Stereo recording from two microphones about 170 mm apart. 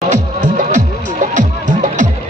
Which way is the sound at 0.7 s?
45° right (ahead or behind).